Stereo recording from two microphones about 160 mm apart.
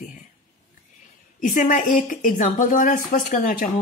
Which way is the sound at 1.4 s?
55° left (ahead or behind).